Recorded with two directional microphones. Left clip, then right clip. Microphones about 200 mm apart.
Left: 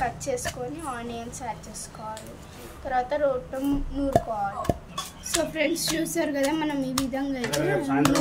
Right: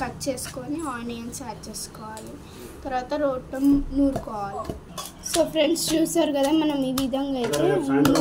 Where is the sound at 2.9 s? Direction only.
5° right (ahead or behind).